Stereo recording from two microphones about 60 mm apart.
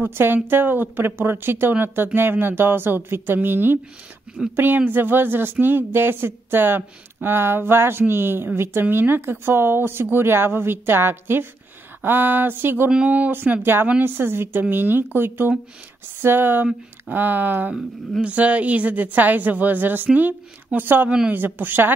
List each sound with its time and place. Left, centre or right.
0.0 s speech: right
12.9 s speech: right